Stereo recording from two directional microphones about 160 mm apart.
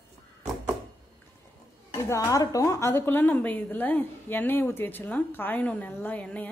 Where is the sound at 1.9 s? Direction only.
20° left (ahead or behind).